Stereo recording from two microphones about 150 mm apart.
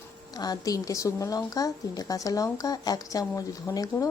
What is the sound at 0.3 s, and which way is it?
Speech, 25° left (ahead or behind).